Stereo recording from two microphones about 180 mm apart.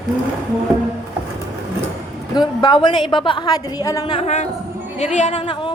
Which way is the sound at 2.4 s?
25° left (ahead or behind).